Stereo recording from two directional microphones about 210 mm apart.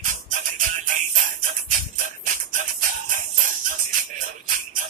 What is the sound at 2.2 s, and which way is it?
Music, 40° right (ahead or behind).